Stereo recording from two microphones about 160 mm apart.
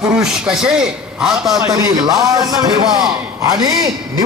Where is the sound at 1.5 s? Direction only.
20° right (ahead or behind).